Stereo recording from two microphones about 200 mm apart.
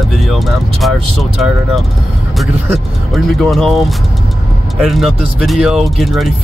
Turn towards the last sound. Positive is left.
turn(degrees=0)  # may be behind; listen again after turning